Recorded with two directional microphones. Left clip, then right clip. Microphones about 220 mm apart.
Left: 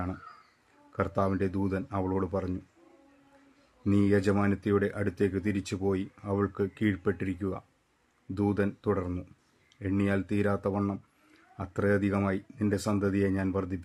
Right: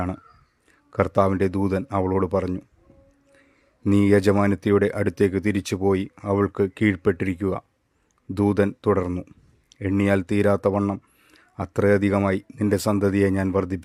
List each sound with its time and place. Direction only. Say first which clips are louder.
0.9 s speech: right 9 dB; 45° right (ahead or behind)
3.8 s speech: right 8 dB; 45° right (ahead or behind)